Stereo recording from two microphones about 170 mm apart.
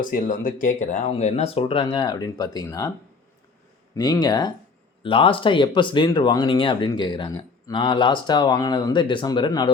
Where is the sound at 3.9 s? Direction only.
25° left (ahead or behind).